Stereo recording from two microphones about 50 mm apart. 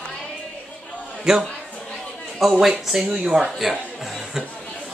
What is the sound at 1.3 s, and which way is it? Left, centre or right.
Speech, centre.